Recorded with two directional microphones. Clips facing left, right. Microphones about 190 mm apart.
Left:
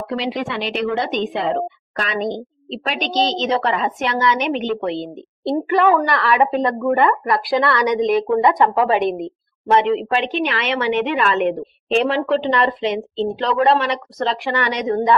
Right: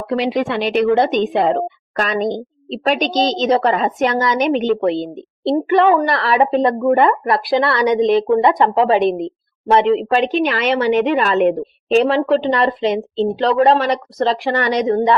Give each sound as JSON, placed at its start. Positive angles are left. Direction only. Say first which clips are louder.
{"t": 0.2, "sound": "a woman's voice", "louder": "right 8 dB", "side_deg": -50}
{"t": 5.6, "sound": "a woman's voice", "louder": "right 2 dB", "side_deg": -25}